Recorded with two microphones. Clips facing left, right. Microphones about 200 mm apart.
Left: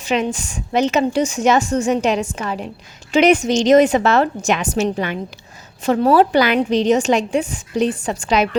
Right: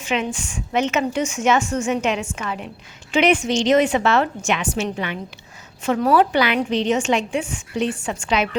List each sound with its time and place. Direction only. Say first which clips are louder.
0.0 s a woman's voice: left 4 dB; 40° left (ahead or behind)